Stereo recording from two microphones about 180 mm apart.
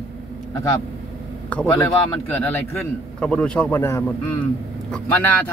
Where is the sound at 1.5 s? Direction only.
10° left (ahead or behind).